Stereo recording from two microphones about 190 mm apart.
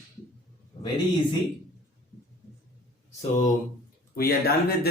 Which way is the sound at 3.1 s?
35° left (ahead or behind).